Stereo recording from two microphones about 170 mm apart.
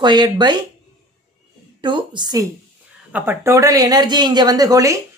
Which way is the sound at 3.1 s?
15° right (ahead or behind).